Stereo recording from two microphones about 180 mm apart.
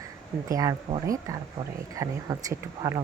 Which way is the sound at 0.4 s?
20° right (ahead or behind).